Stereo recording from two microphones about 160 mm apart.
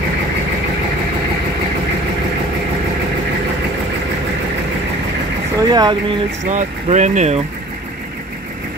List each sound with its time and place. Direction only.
5.6 s speech: 25° right (ahead or behind)
6.4 s speech: 50° right (ahead or behind)